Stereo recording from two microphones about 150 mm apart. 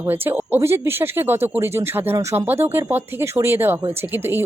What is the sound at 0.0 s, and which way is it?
Speech, 15° right (ahead or behind).